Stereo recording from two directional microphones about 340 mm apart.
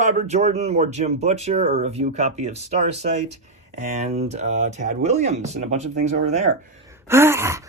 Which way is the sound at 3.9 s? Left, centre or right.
Centre.